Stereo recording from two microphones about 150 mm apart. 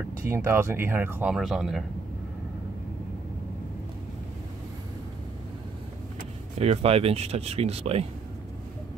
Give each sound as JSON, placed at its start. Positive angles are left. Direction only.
{"t": 0.2, "sound": "speech", "side_deg": -15}
{"t": 1.3, "sound": "speech", "side_deg": 0}
{"t": 6.6, "sound": "speech", "side_deg": -40}